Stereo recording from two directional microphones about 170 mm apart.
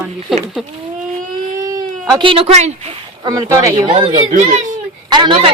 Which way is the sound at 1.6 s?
20° right (ahead or behind).